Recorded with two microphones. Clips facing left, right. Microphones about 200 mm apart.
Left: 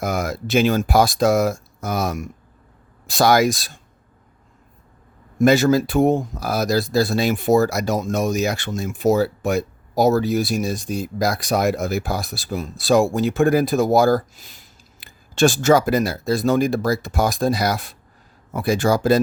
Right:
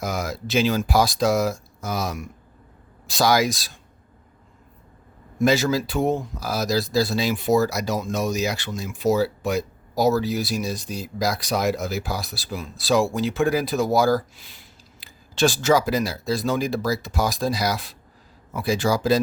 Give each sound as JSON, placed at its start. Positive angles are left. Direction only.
{"t": 0.0, "sound": "speech", "side_deg": 55}
{"t": 5.4, "sound": "speech", "side_deg": 50}